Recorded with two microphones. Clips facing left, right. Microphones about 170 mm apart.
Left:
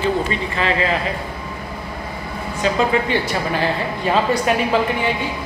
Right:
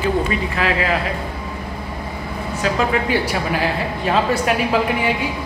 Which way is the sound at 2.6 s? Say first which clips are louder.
Left 1 dB; 5° right (ahead or behind).